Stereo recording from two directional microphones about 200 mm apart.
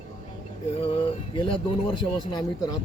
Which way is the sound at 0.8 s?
30° left (ahead or behind).